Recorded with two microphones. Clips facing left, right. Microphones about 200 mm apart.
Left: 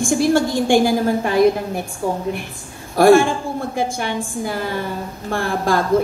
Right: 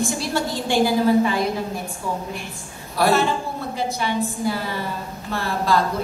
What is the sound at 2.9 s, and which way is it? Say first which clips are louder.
A woman's voice: left 8 dB; 50° left (ahead or behind).